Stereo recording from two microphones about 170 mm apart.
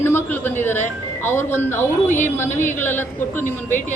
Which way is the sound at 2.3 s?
10° left (ahead or behind).